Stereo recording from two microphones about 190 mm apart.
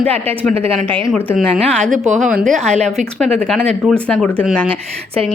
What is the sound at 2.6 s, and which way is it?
Speech, 35° right (ahead or behind).